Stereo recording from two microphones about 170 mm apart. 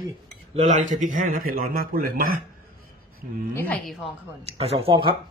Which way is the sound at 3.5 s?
10° left (ahead or behind).